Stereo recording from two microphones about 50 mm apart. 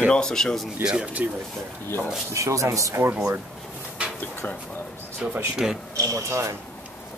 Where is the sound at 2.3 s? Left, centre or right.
Right.